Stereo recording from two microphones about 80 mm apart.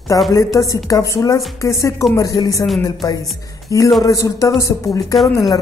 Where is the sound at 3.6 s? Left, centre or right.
Left.